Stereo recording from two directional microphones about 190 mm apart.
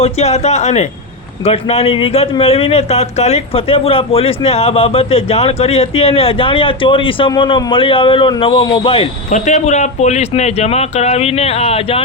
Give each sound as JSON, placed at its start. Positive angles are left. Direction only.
{"t": 0.0, "sound": "speech", "side_deg": 35}